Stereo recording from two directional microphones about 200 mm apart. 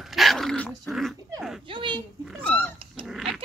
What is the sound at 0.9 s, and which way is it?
Dog, centre (ahead or behind).